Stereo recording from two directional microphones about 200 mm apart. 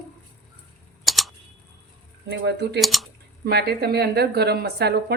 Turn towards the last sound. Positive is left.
turn(degrees=-55)  # may be behind; listen again after turning